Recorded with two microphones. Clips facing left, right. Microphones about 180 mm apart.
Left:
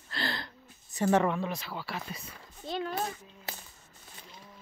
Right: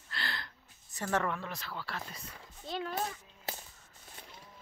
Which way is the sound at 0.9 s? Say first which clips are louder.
Left 7 dB; 20° left (ahead or behind).